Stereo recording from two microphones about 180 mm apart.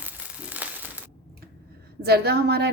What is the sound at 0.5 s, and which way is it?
Crushing, 10° right (ahead or behind).